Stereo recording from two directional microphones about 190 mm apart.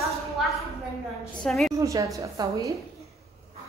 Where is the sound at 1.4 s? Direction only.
Centre (ahead or behind).